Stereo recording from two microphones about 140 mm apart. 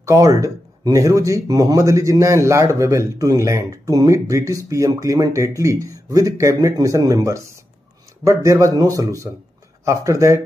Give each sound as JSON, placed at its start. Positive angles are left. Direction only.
{"t": 0.0, "sound": "speech", "side_deg": -25}